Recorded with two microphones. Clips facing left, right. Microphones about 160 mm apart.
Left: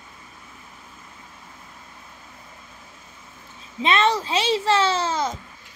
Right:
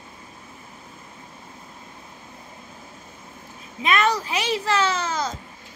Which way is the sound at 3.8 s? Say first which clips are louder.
Left 1 dB; 25° left (ahead or behind).